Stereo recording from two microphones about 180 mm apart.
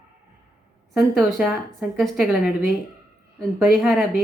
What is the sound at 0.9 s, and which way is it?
A woman's voice, centre (ahead or behind).